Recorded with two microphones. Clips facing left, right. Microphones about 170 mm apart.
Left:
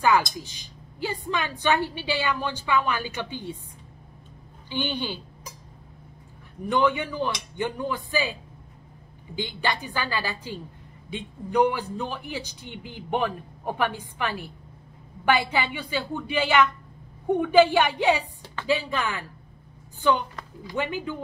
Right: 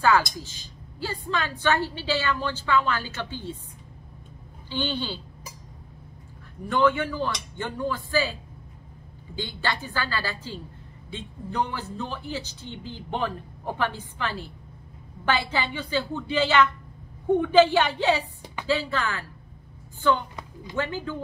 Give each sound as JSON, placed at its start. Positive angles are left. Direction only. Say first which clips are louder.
{"t": 0.0, "sound": "a woman's voice", "louder": "even", "side_deg": 15}
{"t": 4.6, "sound": "a woman's voice", "louder": "even", "side_deg": 15}
{"t": 6.6, "sound": "a woman's voice", "louder": "right 1 dB", "side_deg": 15}